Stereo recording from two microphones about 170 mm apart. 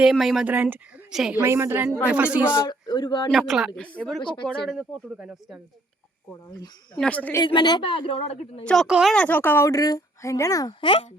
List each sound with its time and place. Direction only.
0.0 s a woman's voice: centre (ahead or behind)
2.6 s speech: 25° left (ahead or behind)
3.3 s speech: centre (ahead or behind)
4.2 s speech: 30° left (ahead or behind)
4.6 s speech: 5° right (ahead or behind)
6.9 s speech: 5° left (ahead or behind)
7.4 s a woman's voice: 25° left (ahead or behind)
8.6 s speech: centre (ahead or behind)
9.1 s speech: 10° left (ahead or behind); by 11.0 s 30° left (ahead or behind)